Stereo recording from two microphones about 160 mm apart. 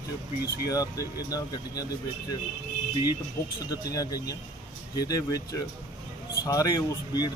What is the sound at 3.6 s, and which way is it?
Speech, 25° left (ahead or behind).